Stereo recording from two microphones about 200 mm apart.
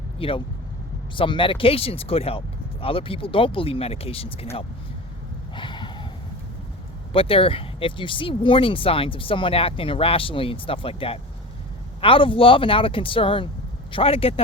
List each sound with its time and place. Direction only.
0.2 s speech: 25° left (ahead or behind)
5.5 s a sound: 25° left (ahead or behind)
7.1 s speech: 25° left (ahead or behind)